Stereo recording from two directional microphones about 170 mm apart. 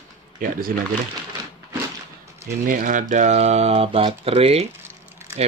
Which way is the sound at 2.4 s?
50° right (ahead or behind).